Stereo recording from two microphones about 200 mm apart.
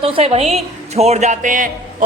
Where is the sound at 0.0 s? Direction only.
30° right (ahead or behind).